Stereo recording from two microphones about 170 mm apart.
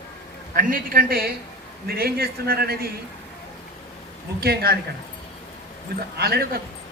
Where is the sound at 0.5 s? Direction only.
55° right (ahead or behind).